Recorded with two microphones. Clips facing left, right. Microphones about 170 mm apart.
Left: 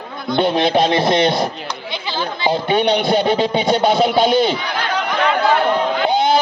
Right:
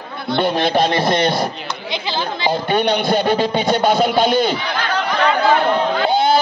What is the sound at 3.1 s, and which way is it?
Speech, 20° left (ahead or behind).